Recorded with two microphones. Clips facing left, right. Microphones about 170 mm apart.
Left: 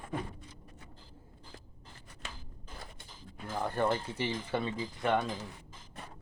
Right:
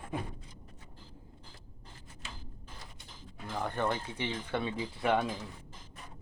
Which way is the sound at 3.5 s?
5° left (ahead or behind).